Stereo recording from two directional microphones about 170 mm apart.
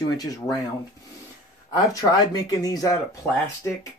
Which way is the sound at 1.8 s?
20° left (ahead or behind).